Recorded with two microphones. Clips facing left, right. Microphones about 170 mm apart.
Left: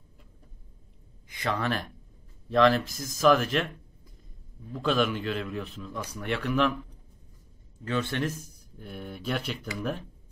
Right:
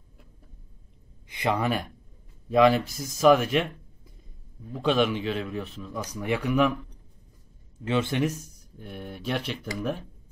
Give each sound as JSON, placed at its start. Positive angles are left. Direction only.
{"t": 1.3, "sound": "speech", "side_deg": -20}
{"t": 2.5, "sound": "speech", "side_deg": -5}
{"t": 4.7, "sound": "a man's voice", "side_deg": 0}
{"t": 7.8, "sound": "speech", "side_deg": -20}
{"t": 8.7, "sound": "a man's voice", "side_deg": 0}